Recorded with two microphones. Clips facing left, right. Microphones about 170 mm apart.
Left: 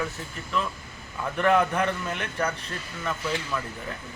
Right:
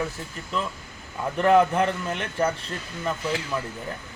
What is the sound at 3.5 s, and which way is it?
Speech, 30° right (ahead or behind).